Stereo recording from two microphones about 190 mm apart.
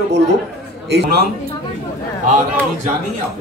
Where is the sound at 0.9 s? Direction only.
60° right (ahead or behind).